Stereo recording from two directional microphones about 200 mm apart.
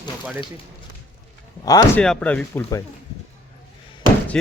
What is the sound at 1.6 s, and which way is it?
Speech, 20° left (ahead or behind).